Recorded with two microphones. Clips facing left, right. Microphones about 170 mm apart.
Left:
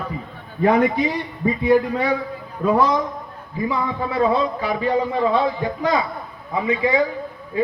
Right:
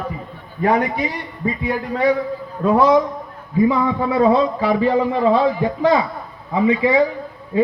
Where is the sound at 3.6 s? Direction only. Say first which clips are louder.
Right 6 dB; 25° right (ahead or behind).